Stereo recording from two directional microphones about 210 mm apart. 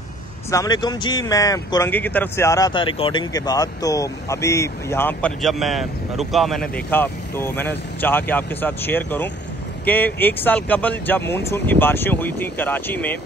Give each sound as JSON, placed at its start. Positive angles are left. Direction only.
{"t": 0.5, "sound": "speech", "side_deg": 20}
{"t": 6.9, "sound": "speech", "side_deg": 10}